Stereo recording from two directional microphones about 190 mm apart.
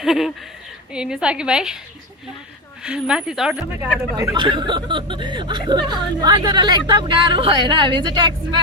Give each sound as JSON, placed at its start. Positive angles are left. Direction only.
{"t": 0.0, "sound": "speech", "side_deg": 0}
{"t": 2.8, "sound": "speech", "side_deg": -5}
{"t": 4.4, "sound": "speech", "side_deg": -25}